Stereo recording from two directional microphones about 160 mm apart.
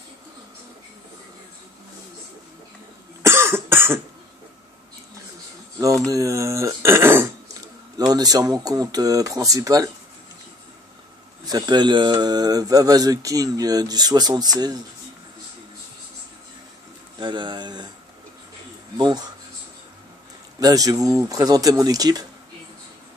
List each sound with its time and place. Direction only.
3.2 s cough: 15° right (ahead or behind)
5.8 s speech: 20° right (ahead or behind)
11.4 s speech: 25° right (ahead or behind)
17.2 s speech: 30° right (ahead or behind)
18.9 s speech: 25° right (ahead or behind)
20.5 s speech: 20° right (ahead or behind)